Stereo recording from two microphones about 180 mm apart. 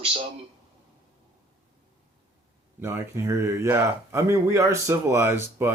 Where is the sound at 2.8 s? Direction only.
15° right (ahead or behind).